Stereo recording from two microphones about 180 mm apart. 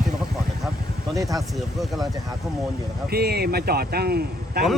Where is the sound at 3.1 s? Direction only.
60° right (ahead or behind).